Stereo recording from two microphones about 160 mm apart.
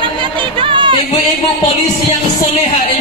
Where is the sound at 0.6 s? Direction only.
30° right (ahead or behind).